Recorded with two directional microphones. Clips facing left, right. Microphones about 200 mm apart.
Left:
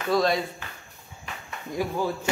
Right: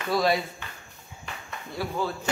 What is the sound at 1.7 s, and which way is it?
Speech, 15° left (ahead or behind).